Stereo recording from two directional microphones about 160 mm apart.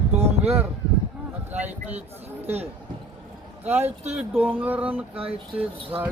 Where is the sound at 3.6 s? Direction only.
15° right (ahead or behind).